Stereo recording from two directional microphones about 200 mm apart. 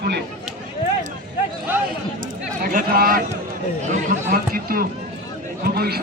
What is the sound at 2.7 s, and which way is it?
Speech, 45° right (ahead or behind).